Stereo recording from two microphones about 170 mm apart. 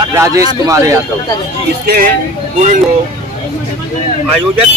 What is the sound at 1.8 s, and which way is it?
Speech, 65° right (ahead or behind).